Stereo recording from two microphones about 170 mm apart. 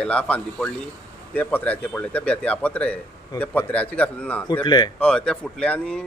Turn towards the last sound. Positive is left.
turn(degrees=5)  # may be behind; listen again after turning